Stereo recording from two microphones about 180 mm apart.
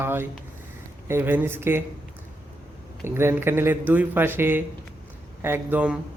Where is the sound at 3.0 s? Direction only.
15° right (ahead or behind).